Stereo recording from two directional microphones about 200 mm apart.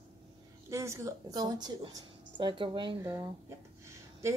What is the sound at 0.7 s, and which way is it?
A woman's voice, 15° right (ahead or behind).